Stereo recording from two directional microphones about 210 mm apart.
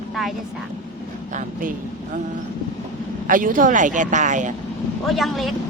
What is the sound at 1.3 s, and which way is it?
Speech, 40° right (ahead or behind).